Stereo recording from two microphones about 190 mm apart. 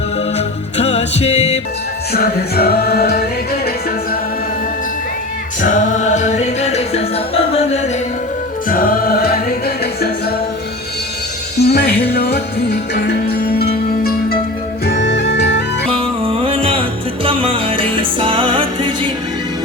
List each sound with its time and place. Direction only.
0.3 s music: 35° left (ahead or behind)
2.1 s music: 55° left (ahead or behind)
5.6 s music: 40° left (ahead or behind)
8.7 s music: 45° left (ahead or behind)
11.5 s music: 60° left (ahead or behind)
15.9 s music: 30° right (ahead or behind)